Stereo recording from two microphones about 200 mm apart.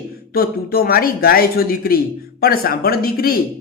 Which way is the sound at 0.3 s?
50° left (ahead or behind).